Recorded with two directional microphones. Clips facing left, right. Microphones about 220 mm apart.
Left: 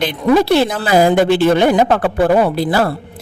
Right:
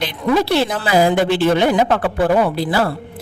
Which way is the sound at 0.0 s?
50° left (ahead or behind).